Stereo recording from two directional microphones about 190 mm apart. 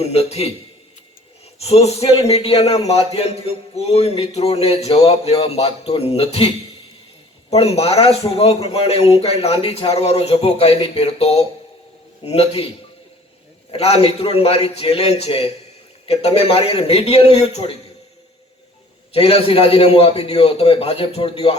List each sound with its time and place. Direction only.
0.0 s a man's voice: 35° left (ahead or behind)
1.5 s a man's voice: 30° left (ahead or behind)
7.5 s a man's voice: 35° left (ahead or behind)
19.1 s a man's voice: 30° left (ahead or behind)